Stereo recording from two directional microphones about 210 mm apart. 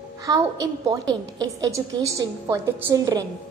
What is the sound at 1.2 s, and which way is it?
A woman's voice, 15° right (ahead or behind).